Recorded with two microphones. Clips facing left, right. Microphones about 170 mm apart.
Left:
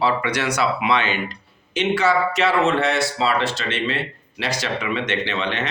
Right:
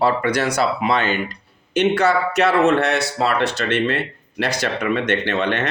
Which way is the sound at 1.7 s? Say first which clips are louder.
Right 2 dB; 60° right (ahead or behind).